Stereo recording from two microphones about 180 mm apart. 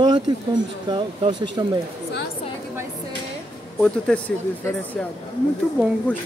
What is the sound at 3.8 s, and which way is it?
Speech, 5° left (ahead or behind).